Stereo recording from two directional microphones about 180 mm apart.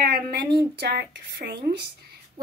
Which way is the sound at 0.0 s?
60° right (ahead or behind).